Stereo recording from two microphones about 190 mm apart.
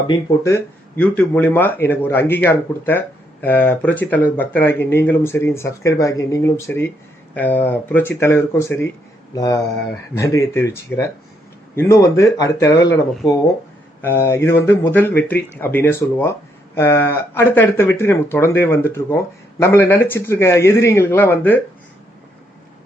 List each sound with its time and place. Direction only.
0.1 s speech: 15° left (ahead or behind)